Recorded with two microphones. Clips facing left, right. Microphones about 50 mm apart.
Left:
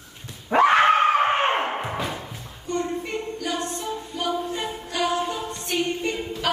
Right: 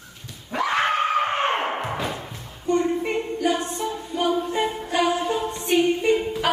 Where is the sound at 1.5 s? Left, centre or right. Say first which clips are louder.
Even; centre.